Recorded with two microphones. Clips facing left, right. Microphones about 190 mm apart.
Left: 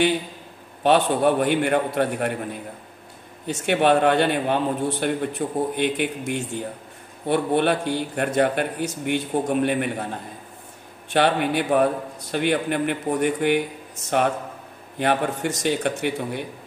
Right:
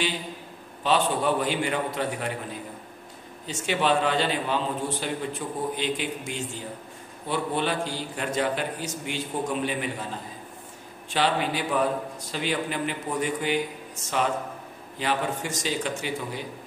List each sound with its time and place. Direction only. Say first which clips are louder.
0.8 s a man's voice: left 6 dB; 60° left (ahead or behind)
11.1 s a man's voice: left 5 dB; 60° left (ahead or behind)